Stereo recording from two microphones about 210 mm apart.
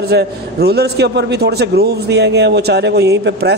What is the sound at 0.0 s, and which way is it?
A man's voice, 50° right (ahead or behind).